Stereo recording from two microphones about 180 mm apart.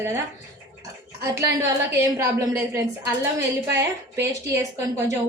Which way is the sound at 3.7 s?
15° right (ahead or behind).